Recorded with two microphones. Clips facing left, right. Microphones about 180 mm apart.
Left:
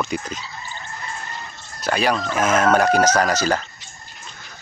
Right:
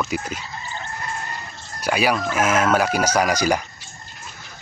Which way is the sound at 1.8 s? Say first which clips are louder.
Even; 10° right (ahead or behind).